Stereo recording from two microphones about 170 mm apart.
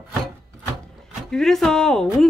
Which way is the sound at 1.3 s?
5° left (ahead or behind).